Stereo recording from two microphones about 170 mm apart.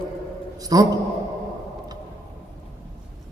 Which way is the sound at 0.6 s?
20° right (ahead or behind).